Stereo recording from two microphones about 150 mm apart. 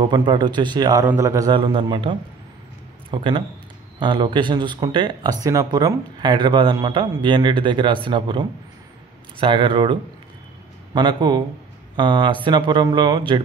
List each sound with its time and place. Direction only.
0.0 s a man's voice: 30° right (ahead or behind)
1.5 s a man's voice: 35° right (ahead or behind)